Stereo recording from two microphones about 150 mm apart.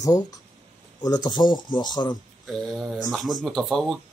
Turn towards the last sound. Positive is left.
turn(degrees=0)  # may be behind; listen again after turning